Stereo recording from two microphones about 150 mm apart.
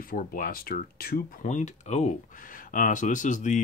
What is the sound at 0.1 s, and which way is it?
Speech, 75° left (ahead or behind).